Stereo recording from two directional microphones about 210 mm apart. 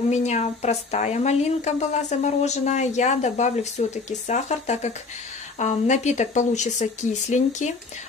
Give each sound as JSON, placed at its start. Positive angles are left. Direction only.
{"t": 0.1, "sound": "a woman's voice", "side_deg": 30}